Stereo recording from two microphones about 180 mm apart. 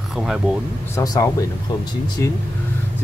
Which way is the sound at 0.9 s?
20° left (ahead or behind).